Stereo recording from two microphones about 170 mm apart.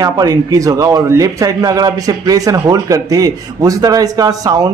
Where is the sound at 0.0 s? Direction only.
20° right (ahead or behind).